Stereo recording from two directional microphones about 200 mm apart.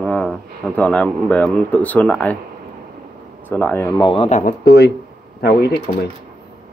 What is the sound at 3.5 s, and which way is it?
Speech, 10° left (ahead or behind).